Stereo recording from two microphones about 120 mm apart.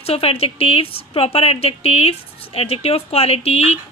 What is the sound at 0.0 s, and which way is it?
A woman's voice, 55° left (ahead or behind).